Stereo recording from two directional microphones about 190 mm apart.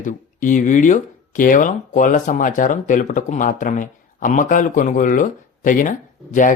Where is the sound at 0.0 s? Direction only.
40° left (ahead or behind).